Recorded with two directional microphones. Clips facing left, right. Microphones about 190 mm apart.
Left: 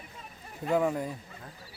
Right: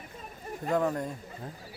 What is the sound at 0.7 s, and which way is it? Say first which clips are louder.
Speech: left 1 dB; 5° left (ahead or behind).